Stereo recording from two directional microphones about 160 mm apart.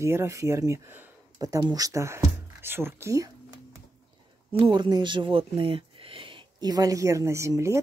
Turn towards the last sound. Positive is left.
turn(degrees=-20)  # may be behind; listen again after turning